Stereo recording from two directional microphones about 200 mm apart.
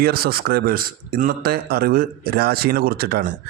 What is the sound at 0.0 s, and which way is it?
A man's voice, 50° right (ahead or behind).